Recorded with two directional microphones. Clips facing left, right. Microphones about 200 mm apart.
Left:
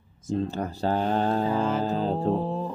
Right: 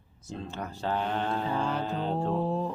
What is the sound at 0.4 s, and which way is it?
A man's voice, 35° left (ahead or behind).